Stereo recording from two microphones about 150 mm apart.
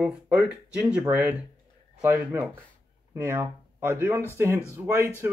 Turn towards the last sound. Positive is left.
turn(degrees=-15)  # may be behind; listen again after turning